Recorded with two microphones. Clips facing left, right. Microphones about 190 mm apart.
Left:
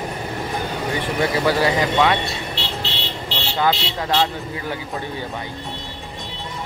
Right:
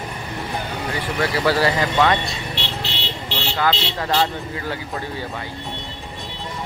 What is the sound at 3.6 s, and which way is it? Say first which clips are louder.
Speech: left 2 dB; 15° left (ahead or behind).